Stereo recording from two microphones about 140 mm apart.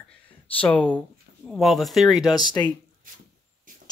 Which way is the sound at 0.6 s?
10° left (ahead or behind).